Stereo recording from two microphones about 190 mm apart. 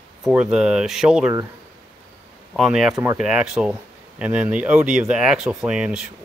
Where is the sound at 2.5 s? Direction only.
Centre (ahead or behind).